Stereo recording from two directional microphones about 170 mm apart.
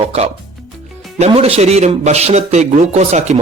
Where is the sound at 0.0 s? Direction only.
35° right (ahead or behind).